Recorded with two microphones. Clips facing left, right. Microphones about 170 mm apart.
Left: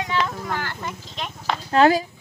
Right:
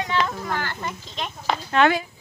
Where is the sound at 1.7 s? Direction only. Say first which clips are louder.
Left 3 dB; 35° left (ahead or behind).